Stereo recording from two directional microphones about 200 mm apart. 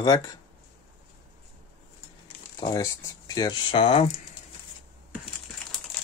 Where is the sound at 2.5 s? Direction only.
20° left (ahead or behind).